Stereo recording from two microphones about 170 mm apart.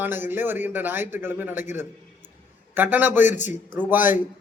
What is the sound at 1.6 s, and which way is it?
Speech, 45° left (ahead or behind).